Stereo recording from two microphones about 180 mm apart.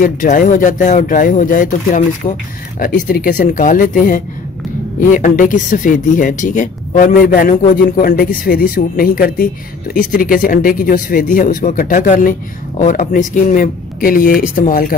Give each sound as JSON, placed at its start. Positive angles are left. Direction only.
{"t": 0.0, "sound": "speech", "side_deg": 50}